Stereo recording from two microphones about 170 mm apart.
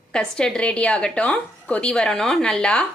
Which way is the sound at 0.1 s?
5° left (ahead or behind).